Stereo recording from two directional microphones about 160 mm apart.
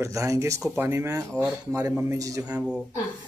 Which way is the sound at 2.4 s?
5° right (ahead or behind).